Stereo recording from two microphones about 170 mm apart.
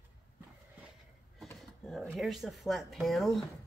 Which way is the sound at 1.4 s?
Centre (ahead or behind).